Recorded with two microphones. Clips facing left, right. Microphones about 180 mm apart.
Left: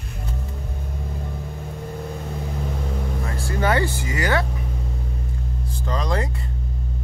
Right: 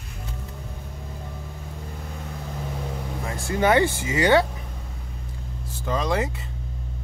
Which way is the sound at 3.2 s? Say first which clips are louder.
Right 3 dB; 20° right (ahead or behind).